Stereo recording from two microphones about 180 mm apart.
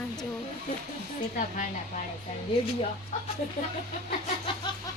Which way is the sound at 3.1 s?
40° left (ahead or behind).